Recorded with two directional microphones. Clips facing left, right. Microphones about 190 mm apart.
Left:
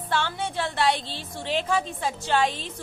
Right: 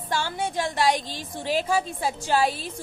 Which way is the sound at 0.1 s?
10° right (ahead or behind).